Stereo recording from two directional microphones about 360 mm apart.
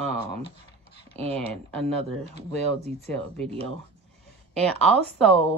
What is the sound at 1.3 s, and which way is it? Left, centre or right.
Speech, centre.